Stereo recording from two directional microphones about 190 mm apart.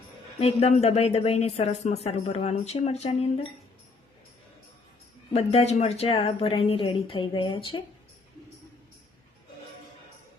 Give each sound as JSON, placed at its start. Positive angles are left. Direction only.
{"t": 0.3, "sound": "a woman's voice", "side_deg": 35}
{"t": 5.3, "sound": "a woman's voice", "side_deg": 30}